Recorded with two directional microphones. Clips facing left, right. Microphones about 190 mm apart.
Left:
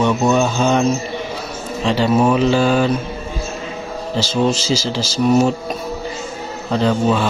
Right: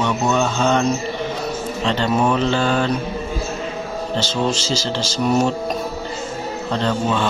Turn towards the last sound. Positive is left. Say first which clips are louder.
# left 4 dB
turn(degrees=5)  # may be behind; listen again after turning